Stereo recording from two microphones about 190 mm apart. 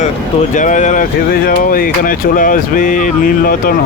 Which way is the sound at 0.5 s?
40° left (ahead or behind).